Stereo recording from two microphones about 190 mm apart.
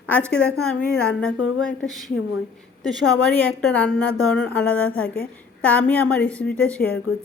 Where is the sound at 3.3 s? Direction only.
10° left (ahead or behind).